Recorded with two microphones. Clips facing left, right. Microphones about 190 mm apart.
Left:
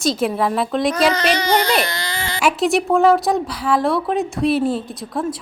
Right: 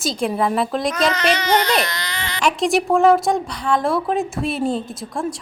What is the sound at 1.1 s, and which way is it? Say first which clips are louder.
Speech: left 1 dB; 35° left (ahead or behind).